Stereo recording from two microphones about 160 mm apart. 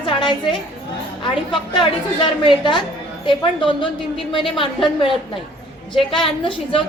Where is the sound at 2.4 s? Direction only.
30° left (ahead or behind).